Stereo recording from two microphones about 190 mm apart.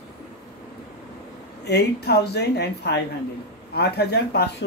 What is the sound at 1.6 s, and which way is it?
A woman's voice, 60° left (ahead or behind).